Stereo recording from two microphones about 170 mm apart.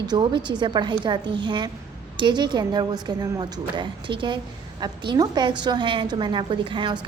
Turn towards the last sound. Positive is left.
turn(degrees=-30)  # may be behind; listen again after turning